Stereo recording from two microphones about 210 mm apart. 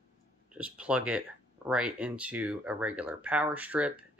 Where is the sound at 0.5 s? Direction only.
5° right (ahead or behind).